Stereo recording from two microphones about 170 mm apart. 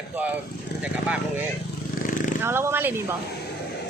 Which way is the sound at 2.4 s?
15° right (ahead or behind).